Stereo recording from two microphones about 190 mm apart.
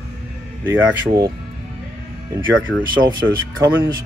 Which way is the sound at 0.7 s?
5° right (ahead or behind).